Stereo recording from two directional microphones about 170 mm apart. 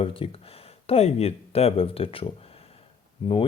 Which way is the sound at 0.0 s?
30° left (ahead or behind).